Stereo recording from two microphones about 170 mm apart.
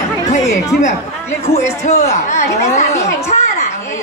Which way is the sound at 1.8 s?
40° left (ahead or behind).